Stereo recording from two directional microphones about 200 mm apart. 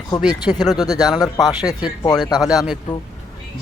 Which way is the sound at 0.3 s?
20° left (ahead or behind).